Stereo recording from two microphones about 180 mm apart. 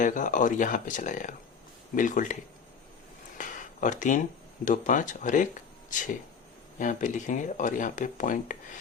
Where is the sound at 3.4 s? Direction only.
45° left (ahead or behind).